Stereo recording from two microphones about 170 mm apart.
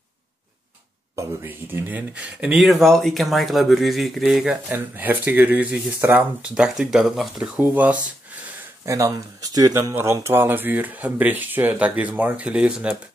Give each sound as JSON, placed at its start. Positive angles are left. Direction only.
{"t": 1.1, "sound": "speech", "side_deg": -10}